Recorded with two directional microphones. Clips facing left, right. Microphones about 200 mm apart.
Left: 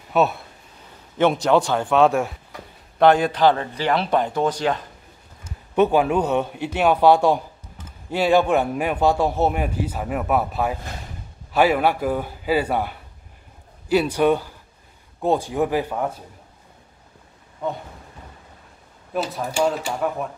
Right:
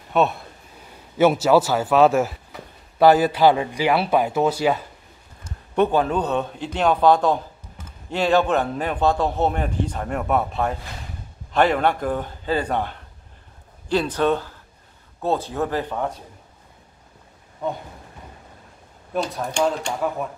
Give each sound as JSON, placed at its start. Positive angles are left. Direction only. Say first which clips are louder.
{"t": 0.1, "sound": "speech", "louder": "even", "side_deg": 0}
{"t": 5.4, "sound": "a man's voice", "louder": "left 2 dB", "side_deg": 10}
{"t": 19.1, "sound": "speech", "louder": "even", "side_deg": 5}